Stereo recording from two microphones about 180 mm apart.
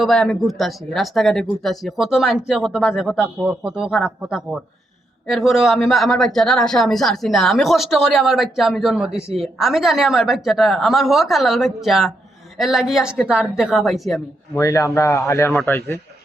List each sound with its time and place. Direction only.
0.0 s speech: 5° left (ahead or behind)
14.5 s speech: 15° left (ahead or behind)